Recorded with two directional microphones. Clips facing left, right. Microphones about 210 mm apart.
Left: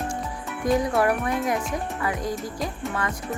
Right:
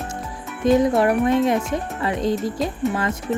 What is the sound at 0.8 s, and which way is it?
Speech, 20° right (ahead or behind).